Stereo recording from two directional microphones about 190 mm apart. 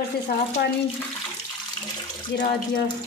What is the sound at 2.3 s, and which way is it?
Speech, 65° left (ahead or behind).